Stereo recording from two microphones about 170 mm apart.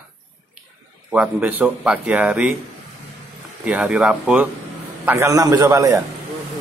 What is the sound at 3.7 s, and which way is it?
Speech, 5° right (ahead or behind).